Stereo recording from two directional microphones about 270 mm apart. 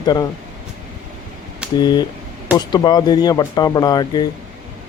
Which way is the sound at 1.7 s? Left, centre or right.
Centre.